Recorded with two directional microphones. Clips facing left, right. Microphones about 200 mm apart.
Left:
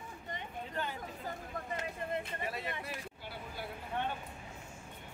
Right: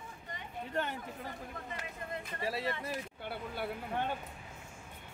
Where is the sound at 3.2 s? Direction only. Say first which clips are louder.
Right 5 dB; 60° right (ahead or behind).